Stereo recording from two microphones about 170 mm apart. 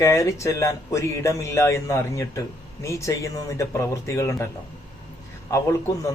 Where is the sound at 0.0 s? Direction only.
20° left (ahead or behind).